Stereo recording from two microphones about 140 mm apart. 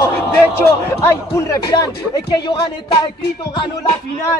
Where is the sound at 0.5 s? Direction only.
20° left (ahead or behind).